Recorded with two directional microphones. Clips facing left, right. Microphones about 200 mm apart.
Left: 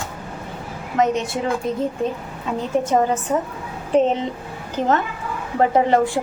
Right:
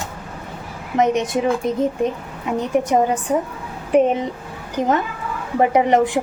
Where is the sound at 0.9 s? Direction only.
20° right (ahead or behind).